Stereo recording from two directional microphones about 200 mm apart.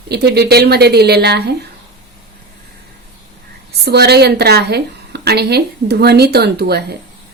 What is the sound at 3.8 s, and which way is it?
A woman's voice, 55° right (ahead or behind).